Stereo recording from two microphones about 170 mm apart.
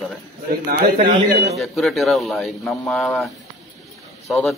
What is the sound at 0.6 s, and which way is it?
Speech, 55° right (ahead or behind).